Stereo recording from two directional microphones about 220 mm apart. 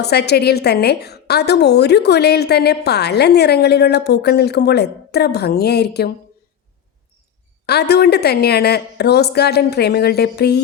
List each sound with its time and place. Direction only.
0.0 s a woman's voice: 50° left (ahead or behind)
7.7 s a woman's voice: 50° left (ahead or behind)